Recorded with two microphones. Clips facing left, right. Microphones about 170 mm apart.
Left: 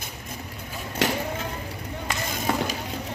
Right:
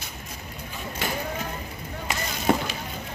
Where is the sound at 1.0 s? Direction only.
90° left.